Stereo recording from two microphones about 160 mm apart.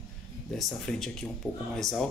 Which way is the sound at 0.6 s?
Centre (ahead or behind).